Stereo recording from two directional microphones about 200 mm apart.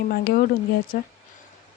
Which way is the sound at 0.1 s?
50° left (ahead or behind).